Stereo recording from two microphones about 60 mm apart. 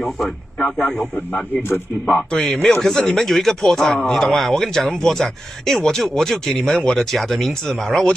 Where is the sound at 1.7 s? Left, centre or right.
Left.